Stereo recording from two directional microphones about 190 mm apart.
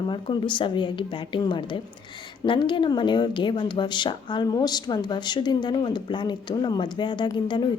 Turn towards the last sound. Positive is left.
turn(degrees=25)  # may be behind; listen again after turning